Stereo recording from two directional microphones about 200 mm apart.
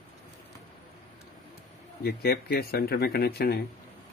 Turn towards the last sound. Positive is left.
turn(degrees=50)  # may be behind; listen again after turning